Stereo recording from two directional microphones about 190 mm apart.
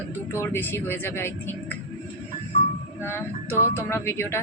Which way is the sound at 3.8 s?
10° left (ahead or behind).